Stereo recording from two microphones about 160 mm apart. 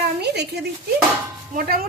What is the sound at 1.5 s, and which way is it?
Speech, 65° right (ahead or behind).